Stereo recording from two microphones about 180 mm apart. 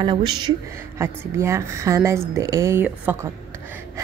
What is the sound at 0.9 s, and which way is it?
A woman's voice, 15° right (ahead or behind).